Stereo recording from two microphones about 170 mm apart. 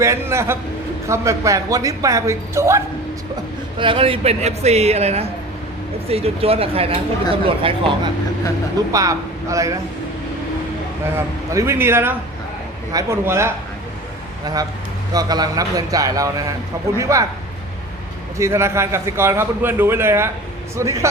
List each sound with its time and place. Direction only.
0.0 s a man's voice: 15° right (ahead or behind)
3.8 s a woman's voice: 30° right (ahead or behind)
8.9 s a man's voice: 20° right (ahead or behind)
11.5 s a man's voice: 15° right (ahead or behind)
18.3 s a man's voice: 15° right (ahead or behind)